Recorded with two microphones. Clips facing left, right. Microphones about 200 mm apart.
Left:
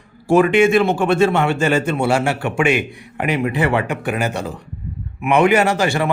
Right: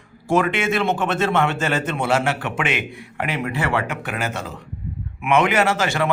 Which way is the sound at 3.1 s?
15° left (ahead or behind).